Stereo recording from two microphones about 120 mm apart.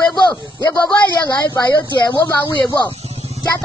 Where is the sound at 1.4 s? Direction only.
35° left (ahead or behind).